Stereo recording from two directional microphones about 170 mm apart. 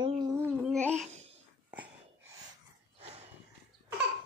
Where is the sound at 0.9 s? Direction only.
40° right (ahead or behind).